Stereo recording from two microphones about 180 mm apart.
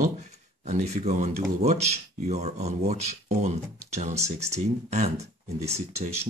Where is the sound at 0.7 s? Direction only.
40° right (ahead or behind).